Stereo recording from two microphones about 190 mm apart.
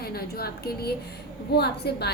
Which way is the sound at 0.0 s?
55° left (ahead or behind).